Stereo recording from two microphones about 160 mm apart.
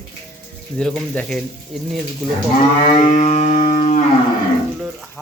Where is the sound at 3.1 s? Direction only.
45° left (ahead or behind).